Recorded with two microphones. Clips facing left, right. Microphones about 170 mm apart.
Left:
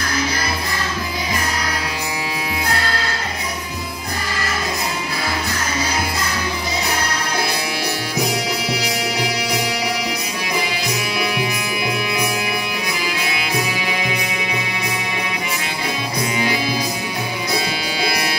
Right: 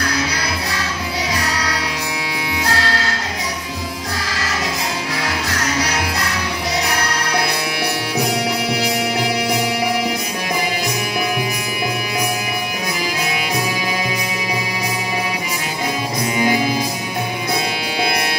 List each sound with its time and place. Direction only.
0.0 s music: 70° right (ahead or behind)
2.6 s music: 90° right
5.5 s music: 75° right (ahead or behind)